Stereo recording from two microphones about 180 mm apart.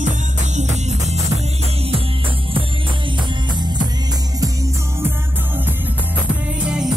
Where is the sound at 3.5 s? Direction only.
25° right (ahead or behind).